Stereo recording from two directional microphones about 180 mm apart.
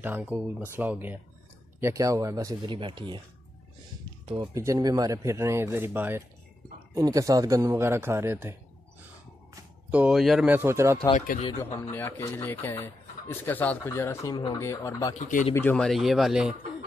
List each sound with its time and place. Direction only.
0.0 s a man's voice: 10° right (ahead or behind); by 3.2 s 25° right (ahead or behind)
4.3 s a man's voice: 20° right (ahead or behind)
9.8 s a man's voice: 5° right (ahead or behind)
11.1 s speech: 45° left (ahead or behind)
11.9 s speech: 15° left (ahead or behind)
15.1 s speech: 45° left (ahead or behind)
15.5 s speech: 10° left (ahead or behind)